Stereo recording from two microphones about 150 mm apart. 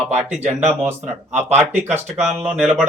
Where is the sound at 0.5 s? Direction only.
50° right (ahead or behind).